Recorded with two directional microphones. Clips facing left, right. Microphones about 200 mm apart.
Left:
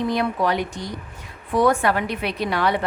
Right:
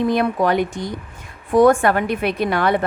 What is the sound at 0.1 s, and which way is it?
A woman's voice, 50° right (ahead or behind).